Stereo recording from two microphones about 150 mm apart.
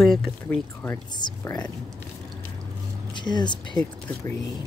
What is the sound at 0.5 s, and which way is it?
Speech, 15° left (ahead or behind).